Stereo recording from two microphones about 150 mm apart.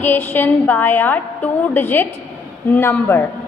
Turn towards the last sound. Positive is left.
turn(degrees=15)  # may be behind; listen again after turning